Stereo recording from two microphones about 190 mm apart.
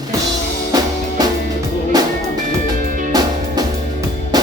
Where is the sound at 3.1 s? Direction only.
20° right (ahead or behind).